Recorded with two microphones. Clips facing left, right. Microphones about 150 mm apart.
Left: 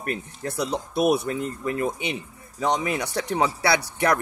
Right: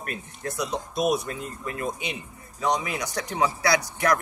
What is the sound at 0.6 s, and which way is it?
Speech, 65° left (ahead or behind).